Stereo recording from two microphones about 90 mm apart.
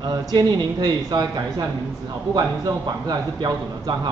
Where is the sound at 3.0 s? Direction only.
55° right (ahead or behind).